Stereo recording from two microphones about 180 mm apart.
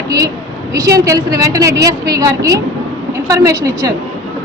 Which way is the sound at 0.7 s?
20° right (ahead or behind).